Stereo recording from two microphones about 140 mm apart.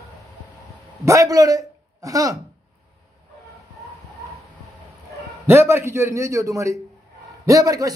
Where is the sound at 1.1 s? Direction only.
25° right (ahead or behind).